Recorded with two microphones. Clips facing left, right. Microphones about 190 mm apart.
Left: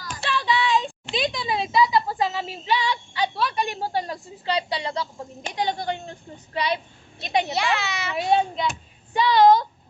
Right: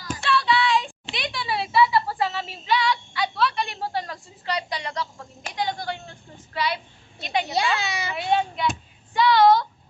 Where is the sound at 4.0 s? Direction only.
25° left (ahead or behind).